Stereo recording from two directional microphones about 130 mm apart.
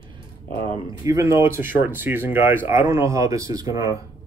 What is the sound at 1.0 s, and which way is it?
Speech, 20° right (ahead or behind).